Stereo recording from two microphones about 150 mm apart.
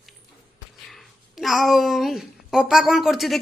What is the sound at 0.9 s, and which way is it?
Speech, centre (ahead or behind).